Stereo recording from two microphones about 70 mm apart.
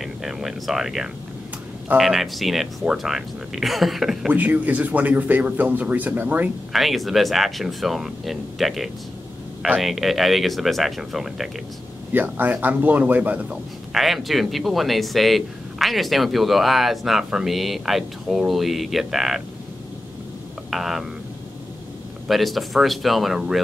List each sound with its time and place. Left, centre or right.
0.0 s speech: centre
4.3 s speech: right
6.7 s speech: centre
12.1 s speech: right
13.9 s speech: centre
20.7 s speech: centre
22.3 s speech: centre